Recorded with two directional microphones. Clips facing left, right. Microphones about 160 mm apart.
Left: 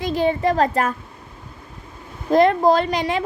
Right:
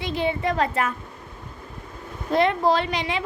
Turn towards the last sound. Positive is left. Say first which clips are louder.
# left 5 dB
turn(degrees=45)  # may be behind; listen again after turning